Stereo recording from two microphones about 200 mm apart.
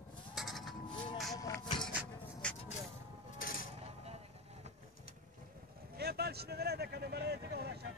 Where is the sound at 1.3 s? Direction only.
20° left (ahead or behind).